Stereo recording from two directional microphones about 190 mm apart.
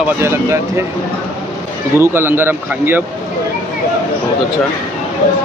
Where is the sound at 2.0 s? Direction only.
10° right (ahead or behind).